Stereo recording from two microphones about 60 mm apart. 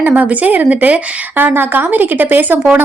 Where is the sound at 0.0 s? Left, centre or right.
Right.